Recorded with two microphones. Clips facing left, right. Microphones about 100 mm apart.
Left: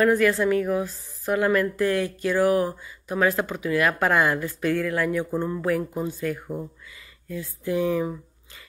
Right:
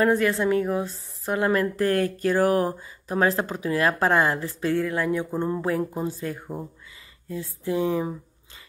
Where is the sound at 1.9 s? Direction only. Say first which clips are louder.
Right 1 dB; 45° right (ahead or behind).